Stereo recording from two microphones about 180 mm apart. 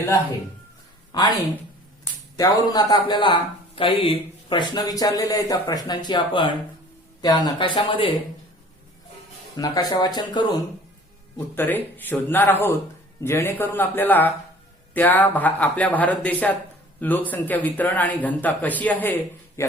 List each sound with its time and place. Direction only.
1.1 s a man's voice: 25° left (ahead or behind)
2.4 s a man's voice: 20° left (ahead or behind)
9.6 s a man's voice: 20° left (ahead or behind)
11.3 s a man's voice: 10° left (ahead or behind)